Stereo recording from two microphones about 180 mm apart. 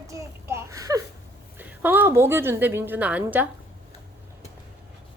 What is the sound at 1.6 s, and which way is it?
A woman's voice, 10° right (ahead or behind).